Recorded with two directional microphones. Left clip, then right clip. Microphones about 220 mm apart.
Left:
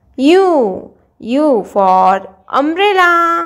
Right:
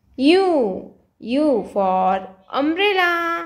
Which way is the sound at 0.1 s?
20° left (ahead or behind).